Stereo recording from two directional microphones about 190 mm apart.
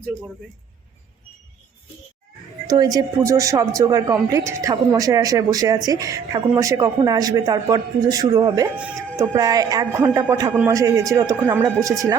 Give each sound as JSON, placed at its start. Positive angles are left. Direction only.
{"t": 2.6, "sound": "a woman's voice", "side_deg": -20}
{"t": 10.5, "sound": "a woman's voice", "side_deg": -5}
{"t": 10.8, "sound": "a woman's voice", "side_deg": -15}